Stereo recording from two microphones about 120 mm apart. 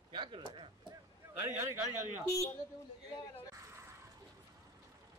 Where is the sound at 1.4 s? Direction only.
15° right (ahead or behind).